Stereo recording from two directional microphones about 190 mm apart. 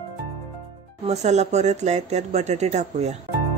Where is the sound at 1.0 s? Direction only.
35° right (ahead or behind).